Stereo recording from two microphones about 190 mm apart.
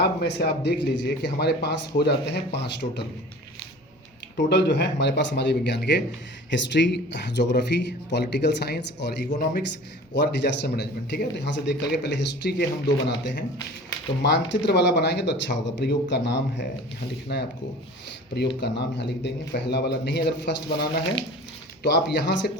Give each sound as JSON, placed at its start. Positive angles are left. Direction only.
{"t": 0.0, "sound": "speech", "side_deg": 60}
{"t": 4.4, "sound": "speech", "side_deg": 65}
{"t": 18.6, "sound": "speech", "side_deg": 65}